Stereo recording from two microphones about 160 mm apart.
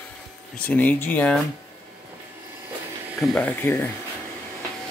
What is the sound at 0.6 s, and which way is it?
Speech, 10° left (ahead or behind).